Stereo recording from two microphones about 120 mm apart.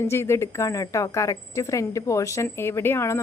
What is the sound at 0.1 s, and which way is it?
A woman's voice, 20° left (ahead or behind).